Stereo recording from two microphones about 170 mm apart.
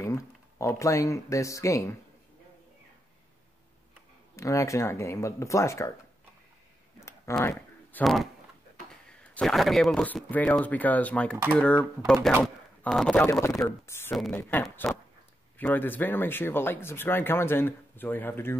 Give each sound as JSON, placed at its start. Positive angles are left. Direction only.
{"t": 0.0, "sound": "speech", "side_deg": 20}
{"t": 4.4, "sound": "speech", "side_deg": 20}
{"t": 7.3, "sound": "speech", "side_deg": 15}
{"t": 8.0, "sound": "speech", "side_deg": 0}
{"t": 13.3, "sound": "speech", "side_deg": 20}